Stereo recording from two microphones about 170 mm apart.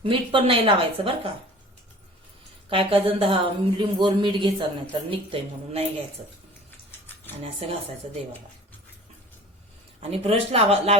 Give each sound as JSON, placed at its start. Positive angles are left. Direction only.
{"t": 0.0, "sound": "a woman's voice", "side_deg": -30}
{"t": 2.6, "sound": "a woman's voice", "side_deg": -30}
{"t": 7.4, "sound": "a woman's voice", "side_deg": -35}
{"t": 10.0, "sound": "a woman's voice", "side_deg": -35}